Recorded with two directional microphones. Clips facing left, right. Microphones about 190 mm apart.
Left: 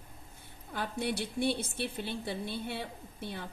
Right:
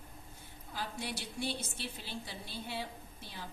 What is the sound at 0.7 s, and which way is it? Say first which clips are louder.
A woman's voice: left 7 dB; 55° left (ahead or behind).